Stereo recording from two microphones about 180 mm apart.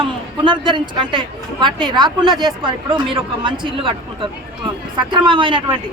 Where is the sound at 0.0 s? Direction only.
25° right (ahead or behind).